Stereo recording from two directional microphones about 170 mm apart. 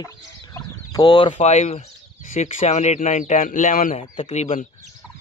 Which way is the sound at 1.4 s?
40° left (ahead or behind).